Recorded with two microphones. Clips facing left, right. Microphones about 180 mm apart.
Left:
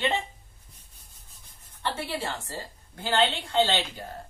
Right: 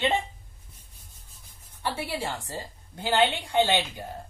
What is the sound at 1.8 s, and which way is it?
A woman's voice, 10° right (ahead or behind).